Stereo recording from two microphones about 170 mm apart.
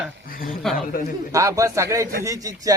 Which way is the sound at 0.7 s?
55° left (ahead or behind).